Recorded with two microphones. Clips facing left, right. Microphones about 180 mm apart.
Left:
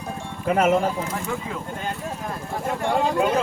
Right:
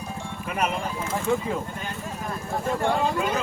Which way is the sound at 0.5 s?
85° left.